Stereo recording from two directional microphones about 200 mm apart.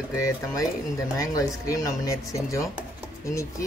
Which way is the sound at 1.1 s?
15° left (ahead or behind).